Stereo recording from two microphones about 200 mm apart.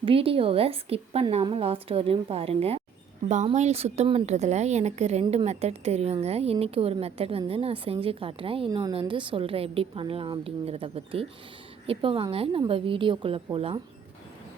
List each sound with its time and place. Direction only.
0.0 s a woman's voice: 30° right (ahead or behind)